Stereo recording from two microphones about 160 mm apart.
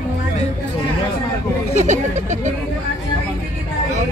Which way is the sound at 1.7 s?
45° right (ahead or behind).